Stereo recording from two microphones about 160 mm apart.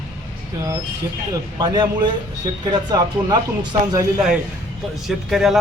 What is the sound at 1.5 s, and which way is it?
Speech, 25° right (ahead or behind).